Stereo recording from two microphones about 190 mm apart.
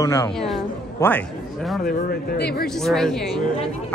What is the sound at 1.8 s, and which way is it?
Speech, 50° left (ahead or behind).